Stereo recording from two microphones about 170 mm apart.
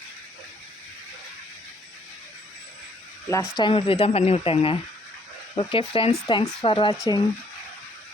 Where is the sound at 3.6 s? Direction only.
30° left (ahead or behind).